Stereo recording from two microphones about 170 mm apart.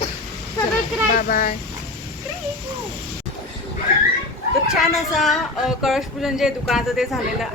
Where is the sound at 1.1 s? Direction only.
55° left (ahead or behind).